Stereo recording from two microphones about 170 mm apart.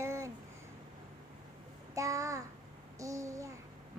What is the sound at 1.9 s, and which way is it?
Child singing, 20° right (ahead or behind).